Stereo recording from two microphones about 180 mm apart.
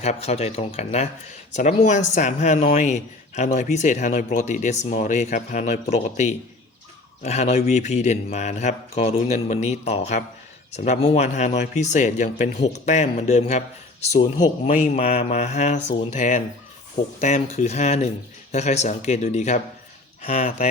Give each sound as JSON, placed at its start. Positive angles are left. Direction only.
{"t": 0.0, "sound": "speech", "side_deg": 35}
{"t": 14.2, "sound": "speech", "side_deg": 20}
{"t": 14.8, "sound": "speech", "side_deg": 35}